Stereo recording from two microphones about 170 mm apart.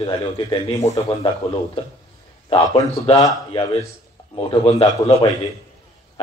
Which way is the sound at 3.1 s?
20° left (ahead or behind).